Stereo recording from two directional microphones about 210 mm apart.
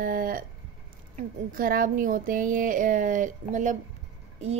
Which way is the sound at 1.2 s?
40° right (ahead or behind).